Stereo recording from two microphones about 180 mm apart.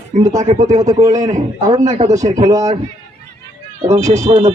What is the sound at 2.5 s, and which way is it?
Speech, 20° right (ahead or behind).